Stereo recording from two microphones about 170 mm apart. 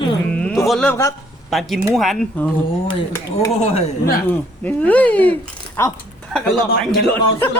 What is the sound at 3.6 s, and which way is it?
Speech, 40° left (ahead or behind).